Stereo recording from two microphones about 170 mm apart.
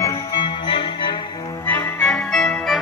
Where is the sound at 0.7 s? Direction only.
30° left (ahead or behind).